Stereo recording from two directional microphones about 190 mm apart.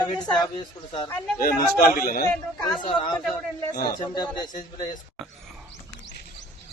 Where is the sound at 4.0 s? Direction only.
20° left (ahead or behind).